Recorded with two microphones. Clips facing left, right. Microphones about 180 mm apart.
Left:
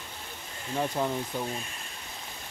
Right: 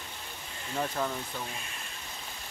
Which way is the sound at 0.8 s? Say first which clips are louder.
Left 3 dB; 20° left (ahead or behind).